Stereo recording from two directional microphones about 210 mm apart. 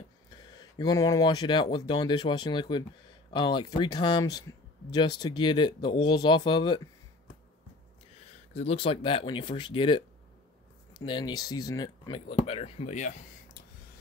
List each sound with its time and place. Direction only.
0.5 s speech: 20° left (ahead or behind)
8.3 s speech: 30° left (ahead or behind)